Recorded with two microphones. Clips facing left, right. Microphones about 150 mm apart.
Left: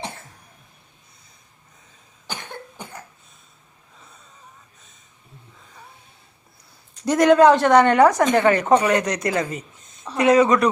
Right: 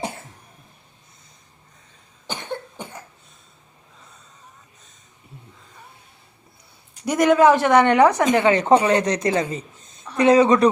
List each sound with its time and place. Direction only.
7.0 s a man's voice: 10° right (ahead or behind); by 10.7 s 30° right (ahead or behind)